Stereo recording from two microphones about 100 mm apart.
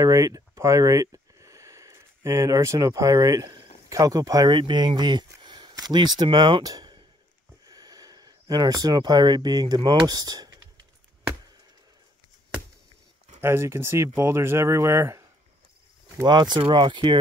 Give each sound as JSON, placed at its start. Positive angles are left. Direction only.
{"t": 0.0, "sound": "speech", "side_deg": -30}
{"t": 13.4, "sound": "speech", "side_deg": -25}
{"t": 16.3, "sound": "speech", "side_deg": -45}